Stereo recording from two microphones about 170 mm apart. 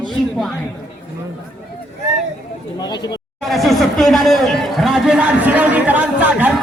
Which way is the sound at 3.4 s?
Centre (ahead or behind).